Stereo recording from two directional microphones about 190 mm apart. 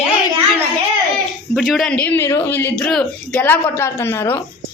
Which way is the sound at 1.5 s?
Centre (ahead or behind).